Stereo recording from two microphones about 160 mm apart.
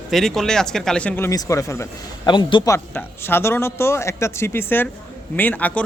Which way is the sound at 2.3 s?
30° left (ahead or behind).